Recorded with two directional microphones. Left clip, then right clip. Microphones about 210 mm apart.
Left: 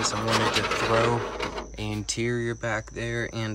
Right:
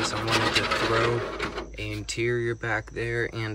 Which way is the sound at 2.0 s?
20° left (ahead or behind).